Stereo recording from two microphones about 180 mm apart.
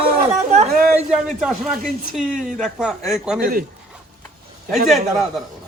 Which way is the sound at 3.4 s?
55° right (ahead or behind).